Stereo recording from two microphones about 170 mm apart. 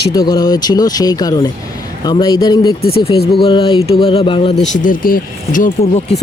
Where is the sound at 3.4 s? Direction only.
30° left (ahead or behind).